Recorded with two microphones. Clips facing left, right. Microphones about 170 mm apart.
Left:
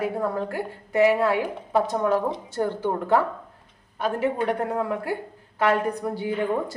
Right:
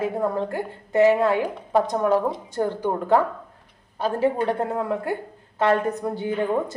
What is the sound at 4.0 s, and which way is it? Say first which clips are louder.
A woman's voice: right 2 dB; 30° right (ahead or behind).